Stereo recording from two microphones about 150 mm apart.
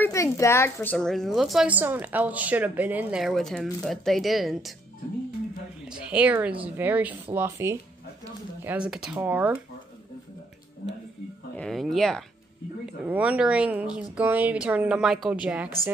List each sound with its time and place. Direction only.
0.0 s a woman's voice: 20° left (ahead or behind)
0.9 s speech: 5° left (ahead or behind)
5.9 s speech: 5° right (ahead or behind)
8.6 s speech: 5° right (ahead or behind)
11.5 s speech: 5° left (ahead or behind)